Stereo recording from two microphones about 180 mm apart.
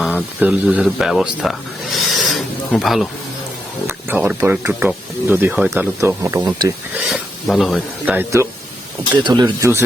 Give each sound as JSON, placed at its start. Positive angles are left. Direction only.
{"t": 0.0, "sound": "speech", "side_deg": -10}
{"t": 3.8, "sound": "speech", "side_deg": -10}
{"t": 7.1, "sound": "speech", "side_deg": 0}
{"t": 9.1, "sound": "speech", "side_deg": -25}